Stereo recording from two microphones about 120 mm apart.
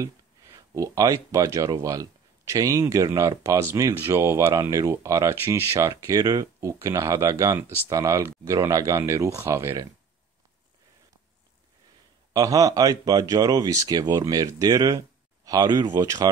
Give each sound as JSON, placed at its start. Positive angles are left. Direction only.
{"t": 0.7, "sound": "speech", "side_deg": -30}
{"t": 12.3, "sound": "speech", "side_deg": -30}